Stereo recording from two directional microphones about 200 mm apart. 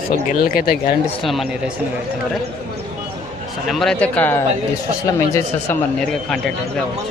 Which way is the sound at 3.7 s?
Centre (ahead or behind).